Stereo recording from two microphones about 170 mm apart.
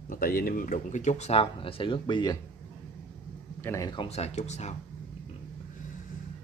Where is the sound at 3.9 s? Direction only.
35° left (ahead or behind).